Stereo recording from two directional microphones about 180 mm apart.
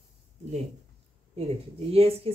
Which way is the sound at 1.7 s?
35° right (ahead or behind).